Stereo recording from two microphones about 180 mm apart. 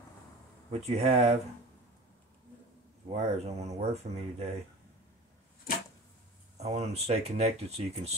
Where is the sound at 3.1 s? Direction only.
35° right (ahead or behind).